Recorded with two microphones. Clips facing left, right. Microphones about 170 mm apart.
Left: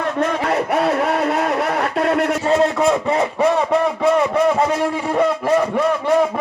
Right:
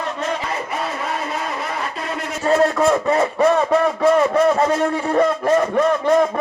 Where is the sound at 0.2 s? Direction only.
60° left (ahead or behind).